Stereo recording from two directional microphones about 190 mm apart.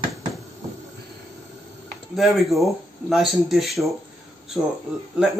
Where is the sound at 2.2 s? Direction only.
Centre (ahead or behind).